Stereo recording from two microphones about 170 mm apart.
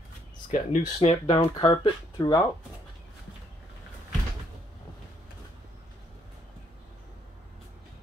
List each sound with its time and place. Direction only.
0.5 s speech: 40° left (ahead or behind)
1.2 s speech: 25° left (ahead or behind)